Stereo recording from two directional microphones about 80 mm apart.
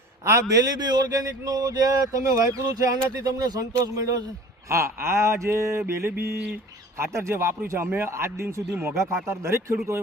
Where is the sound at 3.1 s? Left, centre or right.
Right.